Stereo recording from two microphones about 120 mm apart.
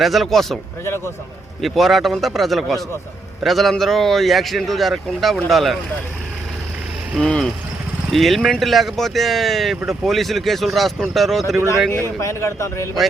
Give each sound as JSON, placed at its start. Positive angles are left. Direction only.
{"t": 0.0, "sound": "speech", "side_deg": 0}
{"t": 0.9, "sound": "a man's voice", "side_deg": 20}
{"t": 1.6, "sound": "speech", "side_deg": 0}
{"t": 7.2, "sound": "speech", "side_deg": 5}
{"t": 11.9, "sound": "a man's voice", "side_deg": 25}